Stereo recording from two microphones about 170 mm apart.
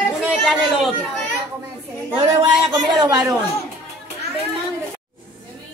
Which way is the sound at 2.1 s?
30° right (ahead or behind).